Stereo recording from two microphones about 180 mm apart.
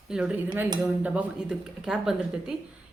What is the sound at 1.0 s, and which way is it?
Speech, 10° right (ahead or behind).